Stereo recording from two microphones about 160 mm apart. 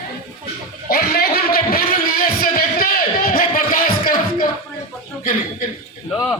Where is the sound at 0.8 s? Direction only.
70° left (ahead or behind).